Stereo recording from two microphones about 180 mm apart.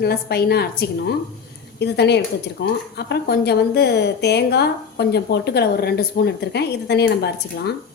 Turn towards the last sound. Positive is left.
turn(degrees=65)  # may be behind; listen again after turning